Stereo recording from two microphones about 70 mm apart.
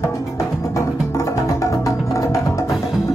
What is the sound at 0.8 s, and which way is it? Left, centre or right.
Music, left.